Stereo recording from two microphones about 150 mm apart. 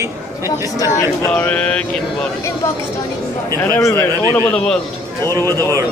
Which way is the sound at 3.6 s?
15° left (ahead or behind).